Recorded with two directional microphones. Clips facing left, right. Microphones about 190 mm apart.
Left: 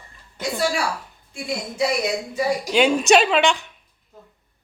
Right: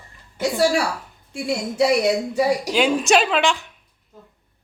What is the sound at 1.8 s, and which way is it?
Speech, 70° right (ahead or behind).